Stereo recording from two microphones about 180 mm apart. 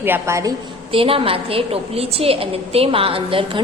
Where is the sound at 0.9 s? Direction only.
30° right (ahead or behind).